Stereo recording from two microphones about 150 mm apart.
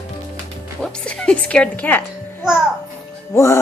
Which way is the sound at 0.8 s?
5° left (ahead or behind).